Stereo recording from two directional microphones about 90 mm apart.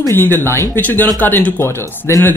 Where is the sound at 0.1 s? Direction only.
25° left (ahead or behind).